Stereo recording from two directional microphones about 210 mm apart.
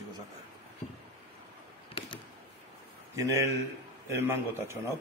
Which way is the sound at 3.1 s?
15° right (ahead or behind).